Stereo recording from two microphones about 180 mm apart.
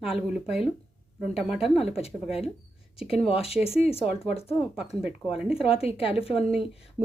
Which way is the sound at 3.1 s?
35° left (ahead or behind).